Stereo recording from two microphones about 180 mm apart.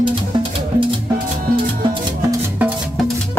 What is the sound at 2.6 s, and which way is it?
Music, 10° right (ahead or behind).